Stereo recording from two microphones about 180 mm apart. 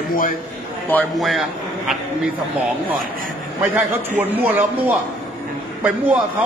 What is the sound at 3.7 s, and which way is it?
Speech, 10° right (ahead or behind).